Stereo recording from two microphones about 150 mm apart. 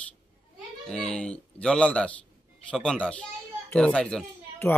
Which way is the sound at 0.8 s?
5° left (ahead or behind).